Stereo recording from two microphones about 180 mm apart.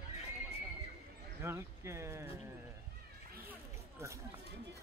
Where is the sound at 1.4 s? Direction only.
15° right (ahead or behind).